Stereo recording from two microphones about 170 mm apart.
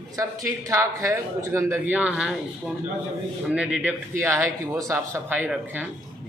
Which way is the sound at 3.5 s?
5° right (ahead or behind).